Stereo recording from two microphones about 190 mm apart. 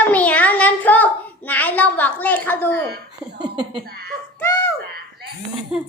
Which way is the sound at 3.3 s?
25° right (ahead or behind).